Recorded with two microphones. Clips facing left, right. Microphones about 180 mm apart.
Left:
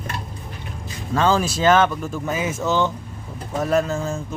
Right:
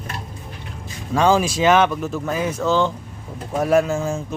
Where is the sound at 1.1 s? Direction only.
10° right (ahead or behind).